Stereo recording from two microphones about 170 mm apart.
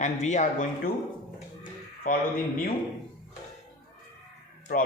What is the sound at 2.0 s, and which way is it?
Speech, 55° left (ahead or behind).